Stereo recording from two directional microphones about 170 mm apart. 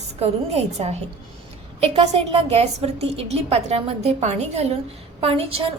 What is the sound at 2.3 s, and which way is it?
A woman's voice, 35° right (ahead or behind).